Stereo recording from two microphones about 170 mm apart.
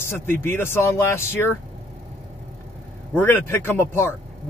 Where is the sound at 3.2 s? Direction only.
10° left (ahead or behind).